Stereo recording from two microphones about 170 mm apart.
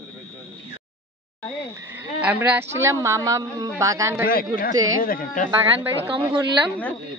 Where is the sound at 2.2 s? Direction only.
10° right (ahead or behind).